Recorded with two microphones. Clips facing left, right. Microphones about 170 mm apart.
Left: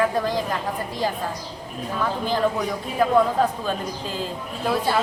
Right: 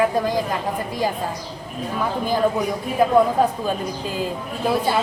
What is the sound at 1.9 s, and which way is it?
A woman's voice, 10° right (ahead or behind).